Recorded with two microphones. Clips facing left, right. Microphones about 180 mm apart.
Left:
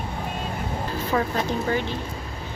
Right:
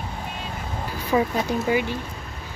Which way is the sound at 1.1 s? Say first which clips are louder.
Right 3 dB; 10° right (ahead or behind).